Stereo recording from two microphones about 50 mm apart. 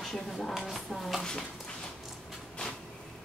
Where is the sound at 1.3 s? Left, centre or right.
Centre.